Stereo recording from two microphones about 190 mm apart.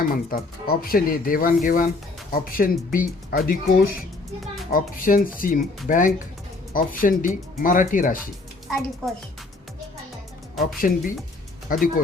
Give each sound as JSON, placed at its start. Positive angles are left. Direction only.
{"t": 0.0, "sound": "speech", "side_deg": 50}
{"t": 10.8, "sound": "speech", "side_deg": 50}